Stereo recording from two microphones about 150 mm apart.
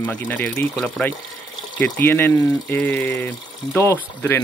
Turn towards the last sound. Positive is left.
turn(degrees=15)  # may be behind; listen again after turning